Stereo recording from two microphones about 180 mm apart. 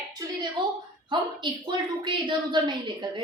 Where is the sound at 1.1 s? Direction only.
25° right (ahead or behind).